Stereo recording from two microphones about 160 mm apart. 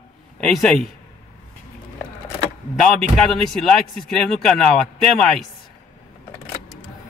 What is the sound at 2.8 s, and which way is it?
A man's voice, 5° left (ahead or behind).